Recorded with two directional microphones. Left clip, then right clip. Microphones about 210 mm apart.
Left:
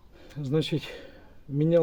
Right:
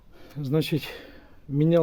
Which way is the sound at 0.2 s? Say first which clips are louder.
Right 1 dB; 30° right (ahead or behind).